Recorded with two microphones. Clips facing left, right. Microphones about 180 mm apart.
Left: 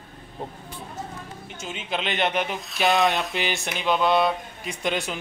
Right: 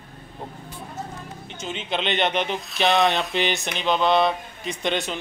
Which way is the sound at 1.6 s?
5° left (ahead or behind).